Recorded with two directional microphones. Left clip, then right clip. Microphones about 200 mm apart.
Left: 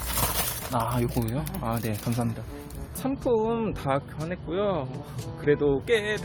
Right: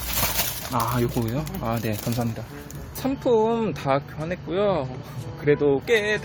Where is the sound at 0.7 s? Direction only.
10° right (ahead or behind).